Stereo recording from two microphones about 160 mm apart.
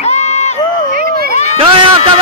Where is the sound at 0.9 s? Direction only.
70° right (ahead or behind).